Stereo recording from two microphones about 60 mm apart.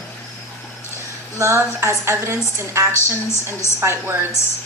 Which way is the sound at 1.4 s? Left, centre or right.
Right.